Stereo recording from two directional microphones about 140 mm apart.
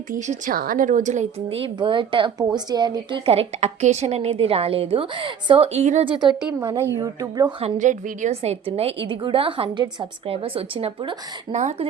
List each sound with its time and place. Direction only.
0.1 s a woman's voice: 65° right (ahead or behind)
6.1 s speech: 35° right (ahead or behind)
6.6 s speech: 25° right (ahead or behind)
7.6 s a woman's voice: 60° right (ahead or behind); by 11.2 s 40° right (ahead or behind)
11.5 s speech: 55° right (ahead or behind)